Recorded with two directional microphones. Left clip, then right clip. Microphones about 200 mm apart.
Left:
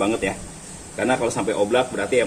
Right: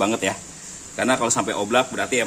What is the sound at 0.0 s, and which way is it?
Speech, 40° right (ahead or behind).